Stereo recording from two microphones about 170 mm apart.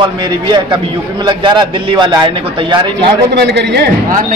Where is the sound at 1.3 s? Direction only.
25° right (ahead or behind).